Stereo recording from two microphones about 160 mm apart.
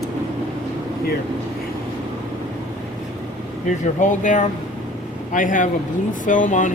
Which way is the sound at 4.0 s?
50° left (ahead or behind).